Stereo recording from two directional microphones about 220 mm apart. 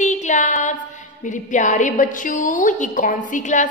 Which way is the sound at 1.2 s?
35° left (ahead or behind).